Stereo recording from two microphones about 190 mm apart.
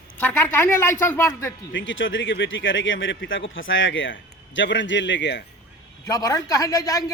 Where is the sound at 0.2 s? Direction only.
10° left (ahead or behind).